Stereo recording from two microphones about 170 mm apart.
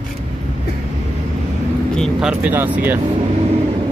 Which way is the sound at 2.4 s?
10° right (ahead or behind).